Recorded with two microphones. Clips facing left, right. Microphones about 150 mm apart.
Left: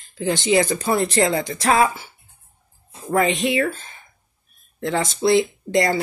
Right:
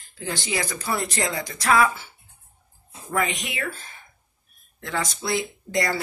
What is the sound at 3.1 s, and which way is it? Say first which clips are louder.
Speech: left 8 dB; 30° left (ahead or behind).